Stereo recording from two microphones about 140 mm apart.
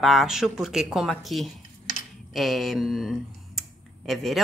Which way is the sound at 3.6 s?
Centre (ahead or behind).